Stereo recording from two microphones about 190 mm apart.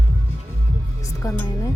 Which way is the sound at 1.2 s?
15° left (ahead or behind).